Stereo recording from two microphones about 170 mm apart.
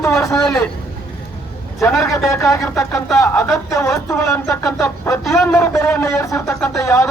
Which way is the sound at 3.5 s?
15° left (ahead or behind).